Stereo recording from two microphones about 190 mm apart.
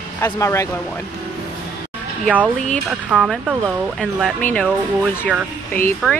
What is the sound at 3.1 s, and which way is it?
Speech, 5° right (ahead or behind).